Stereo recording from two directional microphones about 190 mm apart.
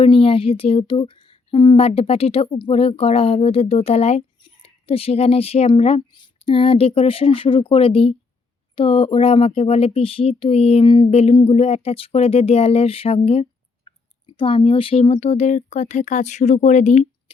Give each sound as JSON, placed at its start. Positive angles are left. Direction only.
{"t": 0.0, "sound": "speech", "side_deg": 30}